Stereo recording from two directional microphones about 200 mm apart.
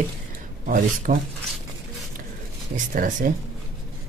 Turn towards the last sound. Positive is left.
turn(degrees=-45)  # may be behind; listen again after turning